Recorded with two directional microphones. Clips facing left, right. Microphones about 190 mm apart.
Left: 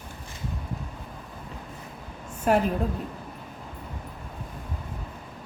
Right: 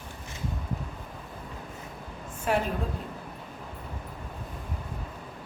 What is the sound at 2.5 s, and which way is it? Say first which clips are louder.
Speech: left 5 dB; 45° left (ahead or behind).